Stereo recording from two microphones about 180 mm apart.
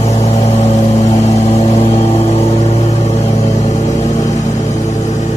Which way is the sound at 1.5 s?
35° left (ahead or behind).